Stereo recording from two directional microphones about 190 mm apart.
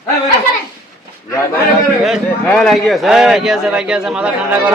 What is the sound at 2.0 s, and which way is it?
Speech, centre (ahead or behind).